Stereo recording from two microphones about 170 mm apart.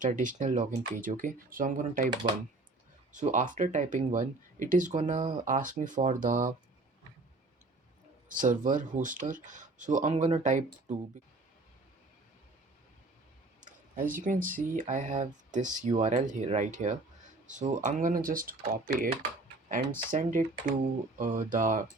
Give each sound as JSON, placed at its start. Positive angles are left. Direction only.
{"t": 0.0, "sound": "speech", "side_deg": -50}
{"t": 3.1, "sound": "speech", "side_deg": -45}
{"t": 8.3, "sound": "speech", "side_deg": -50}
{"t": 13.6, "sound": "a sound", "side_deg": -50}
{"t": 14.1, "sound": "speech", "side_deg": -50}
{"t": 19.6, "sound": "speech", "side_deg": -50}